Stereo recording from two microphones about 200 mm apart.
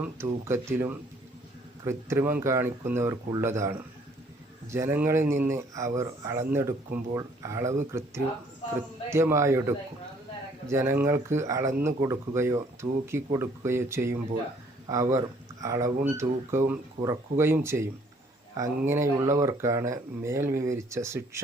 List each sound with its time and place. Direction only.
0.0 s speech: 10° right (ahead or behind)
9.0 s speech: 15° right (ahead or behind)